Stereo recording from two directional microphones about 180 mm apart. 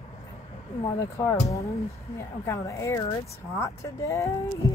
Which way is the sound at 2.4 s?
15° left (ahead or behind).